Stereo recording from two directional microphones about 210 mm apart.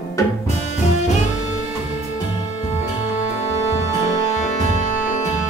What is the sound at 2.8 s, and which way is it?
Music, 35° left (ahead or behind).